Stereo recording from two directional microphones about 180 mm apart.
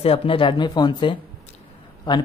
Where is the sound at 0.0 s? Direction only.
30° left (ahead or behind).